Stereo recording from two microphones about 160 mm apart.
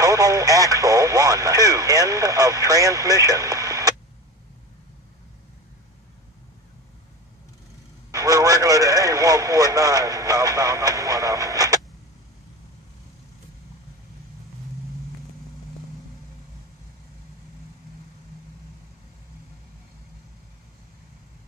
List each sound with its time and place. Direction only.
0.0 s speech: 20° right (ahead or behind)
8.1 s speech: 20° right (ahead or behind)